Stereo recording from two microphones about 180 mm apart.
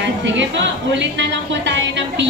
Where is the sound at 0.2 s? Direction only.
85° right.